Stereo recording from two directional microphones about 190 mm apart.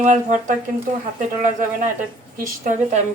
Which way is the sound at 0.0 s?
40° right (ahead or behind).